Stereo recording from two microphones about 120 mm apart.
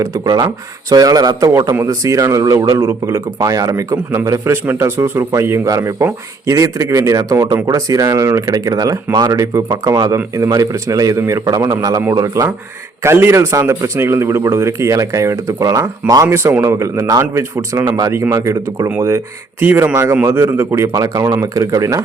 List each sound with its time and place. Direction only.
0.0 s a man's voice: 30° right (ahead or behind)